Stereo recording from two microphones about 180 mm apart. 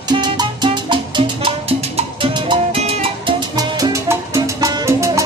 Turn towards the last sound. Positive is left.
turn(degrees=-15)  # may be behind; listen again after turning